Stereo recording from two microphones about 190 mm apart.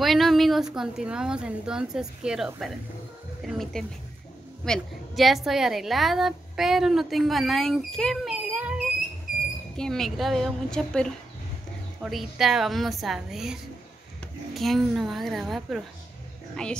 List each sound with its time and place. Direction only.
0.0 s a woman's voice: centre (ahead or behind)